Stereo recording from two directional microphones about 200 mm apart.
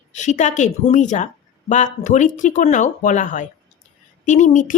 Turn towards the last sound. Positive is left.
turn(degrees=40)  # may be behind; listen again after turning